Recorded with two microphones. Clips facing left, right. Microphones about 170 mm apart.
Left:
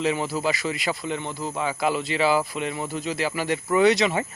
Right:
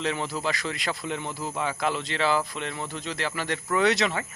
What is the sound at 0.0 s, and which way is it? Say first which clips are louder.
Speech: left 4 dB; 5° left (ahead or behind).